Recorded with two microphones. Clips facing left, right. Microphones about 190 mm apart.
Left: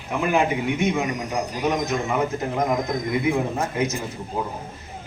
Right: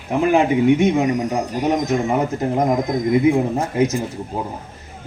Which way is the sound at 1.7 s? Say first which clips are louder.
Right 5 dB; 30° right (ahead or behind).